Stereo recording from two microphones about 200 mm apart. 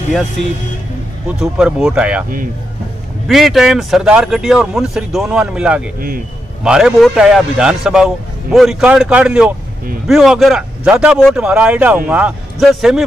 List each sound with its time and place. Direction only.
0.1 s a man's voice: centre (ahead or behind)
3.3 s a man's voice: centre (ahead or behind)
5.9 s a man's voice: 45° right (ahead or behind)
6.6 s a man's voice: centre (ahead or behind)